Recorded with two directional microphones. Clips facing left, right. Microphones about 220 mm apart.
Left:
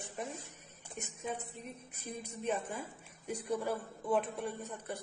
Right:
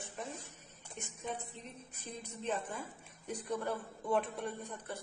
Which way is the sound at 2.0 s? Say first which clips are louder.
Left 3 dB; 10° left (ahead or behind).